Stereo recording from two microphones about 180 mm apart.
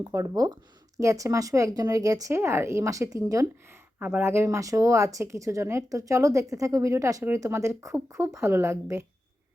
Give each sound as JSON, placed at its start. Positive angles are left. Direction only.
{"t": 0.0, "sound": "speech", "side_deg": -20}